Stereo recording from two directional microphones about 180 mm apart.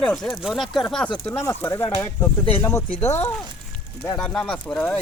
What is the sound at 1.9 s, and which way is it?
Speech, 30° left (ahead or behind).